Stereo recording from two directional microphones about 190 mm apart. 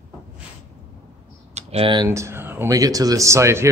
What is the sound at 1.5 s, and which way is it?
Speech, 30° right (ahead or behind).